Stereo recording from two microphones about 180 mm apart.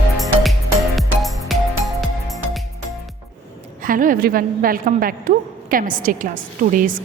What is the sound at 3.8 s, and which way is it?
A woman's voice, 50° right (ahead or behind).